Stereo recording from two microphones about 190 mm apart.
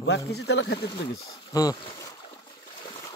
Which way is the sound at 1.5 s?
20° left (ahead or behind).